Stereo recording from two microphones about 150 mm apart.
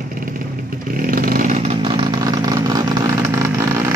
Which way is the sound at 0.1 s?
65° right (ahead or behind).